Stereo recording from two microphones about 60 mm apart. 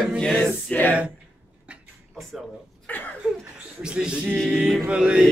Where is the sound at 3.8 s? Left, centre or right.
Centre.